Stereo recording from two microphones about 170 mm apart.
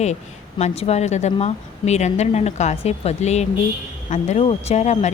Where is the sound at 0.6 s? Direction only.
40° left (ahead or behind).